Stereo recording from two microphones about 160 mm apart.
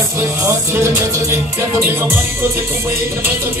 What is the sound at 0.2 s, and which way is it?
Music, 15° right (ahead or behind).